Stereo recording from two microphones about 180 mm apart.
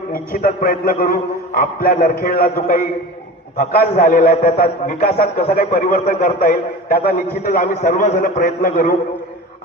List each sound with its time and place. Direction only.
0.1 s a man's voice: 50° left (ahead or behind)